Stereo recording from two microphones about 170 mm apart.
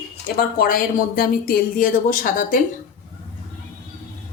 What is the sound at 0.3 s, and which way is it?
Speech, 55° left (ahead or behind).